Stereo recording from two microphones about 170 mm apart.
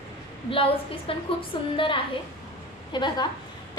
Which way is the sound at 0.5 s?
30° left (ahead or behind).